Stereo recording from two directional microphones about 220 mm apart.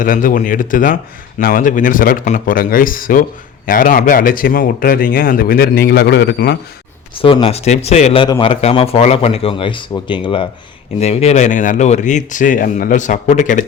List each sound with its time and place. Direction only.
0.0 s speech: 40° left (ahead or behind)
7.2 s speech: 25° left (ahead or behind)